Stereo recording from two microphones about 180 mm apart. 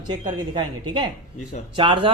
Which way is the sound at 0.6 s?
25° right (ahead or behind).